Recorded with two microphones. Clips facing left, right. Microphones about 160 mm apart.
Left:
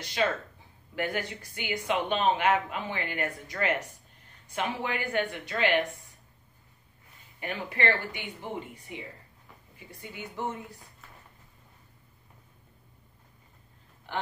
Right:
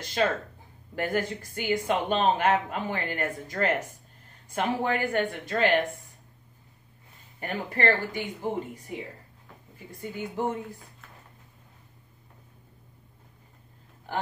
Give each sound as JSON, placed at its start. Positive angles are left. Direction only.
{"t": 0.0, "sound": "speech", "side_deg": -45}
{"t": 7.3, "sound": "speech", "side_deg": -45}